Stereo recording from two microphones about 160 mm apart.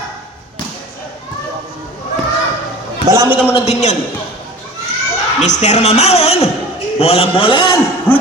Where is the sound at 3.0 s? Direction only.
20° right (ahead or behind).